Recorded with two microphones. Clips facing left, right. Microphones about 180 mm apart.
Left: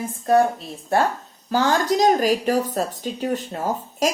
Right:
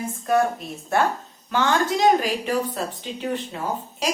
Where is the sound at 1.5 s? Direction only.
35° left (ahead or behind).